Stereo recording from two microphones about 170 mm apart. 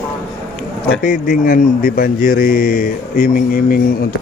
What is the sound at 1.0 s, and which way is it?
A man's voice, 60° left (ahead or behind).